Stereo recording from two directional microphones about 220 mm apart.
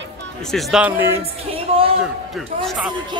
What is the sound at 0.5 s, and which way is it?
Speech, 5° right (ahead or behind).